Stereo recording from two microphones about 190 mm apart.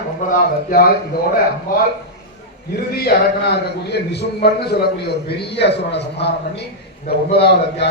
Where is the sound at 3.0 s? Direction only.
55° left (ahead or behind).